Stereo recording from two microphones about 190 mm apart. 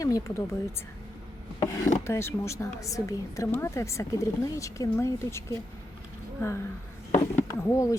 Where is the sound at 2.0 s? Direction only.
15° left (ahead or behind).